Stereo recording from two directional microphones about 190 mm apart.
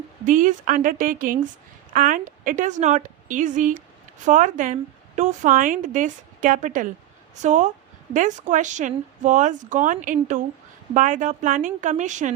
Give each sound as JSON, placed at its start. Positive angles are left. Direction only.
{"t": 0.3, "sound": "a woman's voice", "side_deg": -45}